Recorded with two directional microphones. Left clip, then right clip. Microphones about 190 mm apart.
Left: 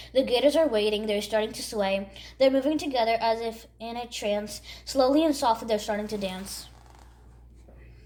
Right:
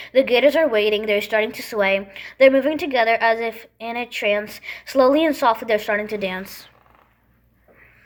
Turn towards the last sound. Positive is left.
turn(degrees=-20)  # may be behind; listen again after turning